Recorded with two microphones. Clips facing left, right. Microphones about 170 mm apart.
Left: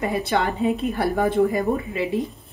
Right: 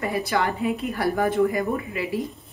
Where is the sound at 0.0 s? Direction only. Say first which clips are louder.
Left 2 dB; 25° left (ahead or behind).